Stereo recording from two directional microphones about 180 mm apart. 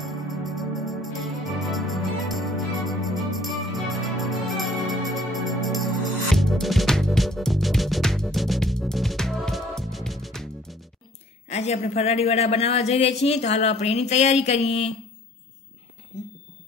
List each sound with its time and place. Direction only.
0.0 s organ: centre (ahead or behind)
11.4 s a woman's voice: 35° left (ahead or behind)